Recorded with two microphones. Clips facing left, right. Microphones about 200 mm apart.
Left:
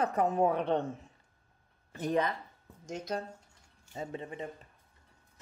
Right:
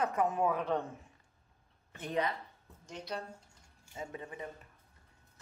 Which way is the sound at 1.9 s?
40° left (ahead or behind).